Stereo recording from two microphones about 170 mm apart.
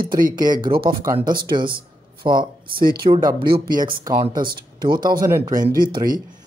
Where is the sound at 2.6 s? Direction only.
60° right (ahead or behind).